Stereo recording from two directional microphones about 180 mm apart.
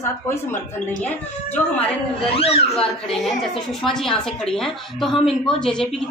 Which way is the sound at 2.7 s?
5° left (ahead or behind).